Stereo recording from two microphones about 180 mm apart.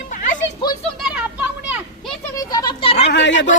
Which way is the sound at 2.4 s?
25° left (ahead or behind).